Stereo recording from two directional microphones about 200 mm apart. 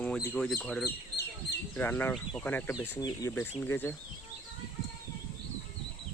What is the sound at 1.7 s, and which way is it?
Speech, 10° left (ahead or behind).